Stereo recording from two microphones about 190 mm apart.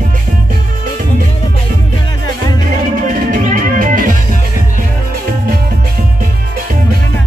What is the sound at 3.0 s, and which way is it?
Music, 45° right (ahead or behind).